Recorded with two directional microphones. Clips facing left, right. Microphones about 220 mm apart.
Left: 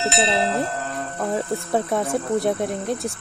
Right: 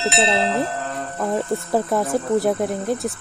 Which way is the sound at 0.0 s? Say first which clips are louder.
Right 1 dB; centre (ahead or behind).